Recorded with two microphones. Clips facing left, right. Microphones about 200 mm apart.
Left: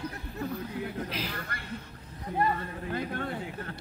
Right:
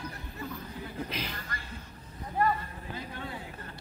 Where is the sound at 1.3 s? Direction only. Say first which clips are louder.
Left 3 dB; 60° left (ahead or behind).